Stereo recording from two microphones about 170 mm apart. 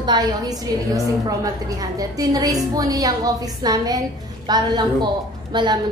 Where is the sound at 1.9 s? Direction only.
20° right (ahead or behind).